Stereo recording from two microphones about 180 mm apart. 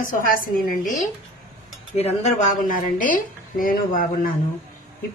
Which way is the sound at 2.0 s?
35° left (ahead or behind).